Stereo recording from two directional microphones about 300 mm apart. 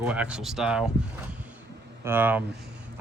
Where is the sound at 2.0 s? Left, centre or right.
Centre.